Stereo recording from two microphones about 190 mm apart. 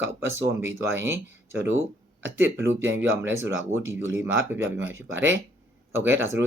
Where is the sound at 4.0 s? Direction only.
90° right.